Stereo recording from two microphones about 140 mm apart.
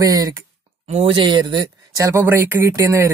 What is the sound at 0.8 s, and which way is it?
Speech, 55° right (ahead or behind).